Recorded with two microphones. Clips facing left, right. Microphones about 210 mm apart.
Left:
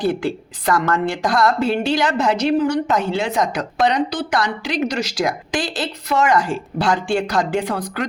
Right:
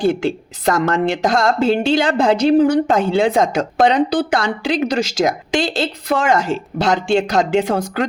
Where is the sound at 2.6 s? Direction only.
55° right (ahead or behind).